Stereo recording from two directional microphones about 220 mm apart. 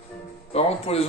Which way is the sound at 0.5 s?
25° left (ahead or behind).